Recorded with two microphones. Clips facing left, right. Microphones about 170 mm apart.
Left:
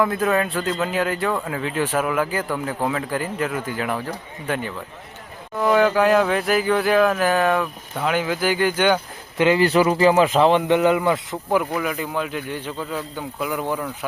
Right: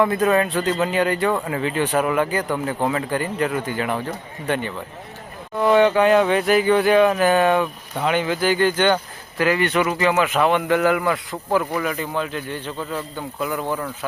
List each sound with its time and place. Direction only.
0.0 s speech: centre (ahead or behind)
9.4 s speech: 25° left (ahead or behind)
11.6 s speech: 5° left (ahead or behind)